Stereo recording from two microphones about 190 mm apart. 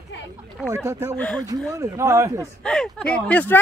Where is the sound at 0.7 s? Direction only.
15° right (ahead or behind).